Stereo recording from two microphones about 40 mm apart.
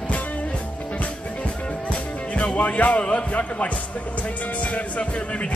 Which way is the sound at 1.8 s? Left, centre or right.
Left.